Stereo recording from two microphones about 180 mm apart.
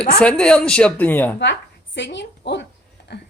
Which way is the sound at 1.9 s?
90° left.